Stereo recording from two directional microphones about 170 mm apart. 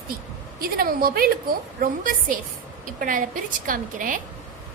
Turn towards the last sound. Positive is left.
turn(degrees=-50)  # may be behind; listen again after turning